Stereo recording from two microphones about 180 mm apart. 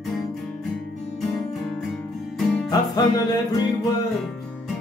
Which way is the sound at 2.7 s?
20° left (ahead or behind).